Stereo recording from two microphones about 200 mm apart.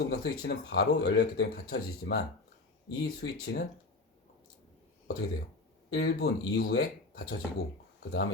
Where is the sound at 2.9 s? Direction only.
65° left (ahead or behind).